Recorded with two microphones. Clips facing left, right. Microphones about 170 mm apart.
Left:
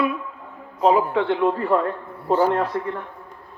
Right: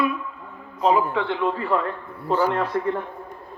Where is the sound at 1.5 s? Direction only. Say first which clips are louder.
Left 3 dB; 45° left (ahead or behind).